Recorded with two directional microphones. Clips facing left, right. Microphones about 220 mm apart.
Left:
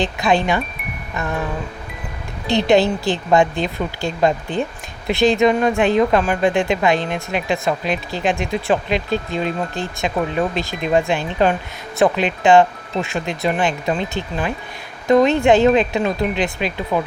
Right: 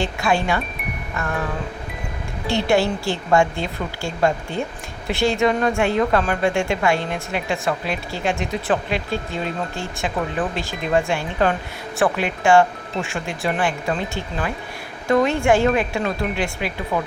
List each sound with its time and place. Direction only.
0.0 s speech: 20° left (ahead or behind)
2.5 s speech: 20° left (ahead or behind)